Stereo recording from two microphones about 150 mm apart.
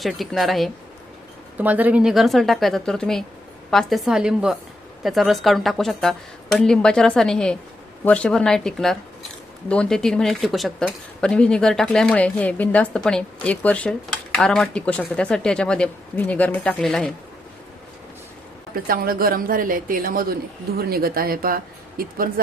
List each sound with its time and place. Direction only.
0.0 s speech: centre (ahead or behind)
1.5 s speech: 10° right (ahead or behind)
18.9 s a woman's voice: 75° right (ahead or behind)
20.7 s speech: 85° right